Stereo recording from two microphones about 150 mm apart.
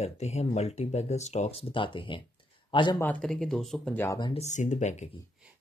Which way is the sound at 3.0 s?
10° left (ahead or behind).